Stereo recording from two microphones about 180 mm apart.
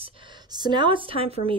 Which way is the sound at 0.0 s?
25° right (ahead or behind).